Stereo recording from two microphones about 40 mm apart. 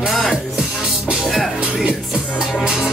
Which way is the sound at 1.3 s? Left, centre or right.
Centre.